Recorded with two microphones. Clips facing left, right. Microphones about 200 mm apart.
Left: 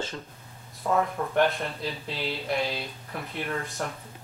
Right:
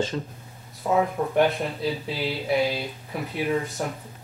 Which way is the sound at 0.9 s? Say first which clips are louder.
Right 3 dB; 5° right (ahead or behind).